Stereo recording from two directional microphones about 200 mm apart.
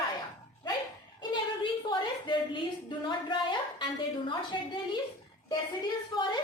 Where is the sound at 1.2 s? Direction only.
25° left (ahead or behind).